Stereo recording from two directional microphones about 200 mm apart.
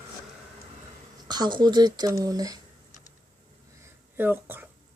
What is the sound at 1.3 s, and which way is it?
Speech, 20° right (ahead or behind).